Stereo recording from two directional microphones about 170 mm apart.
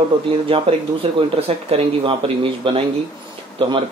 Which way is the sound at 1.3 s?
35° right (ahead or behind).